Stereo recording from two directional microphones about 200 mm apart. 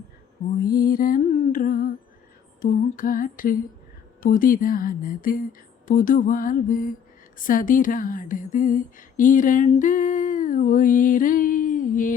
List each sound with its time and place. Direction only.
0.6 s speech: 45° left (ahead or behind)